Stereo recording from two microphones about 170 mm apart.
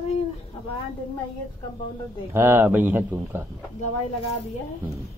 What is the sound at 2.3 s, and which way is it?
Speech, 15° right (ahead or behind).